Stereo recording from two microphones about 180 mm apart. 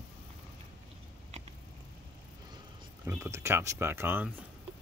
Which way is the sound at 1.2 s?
35° right (ahead or behind).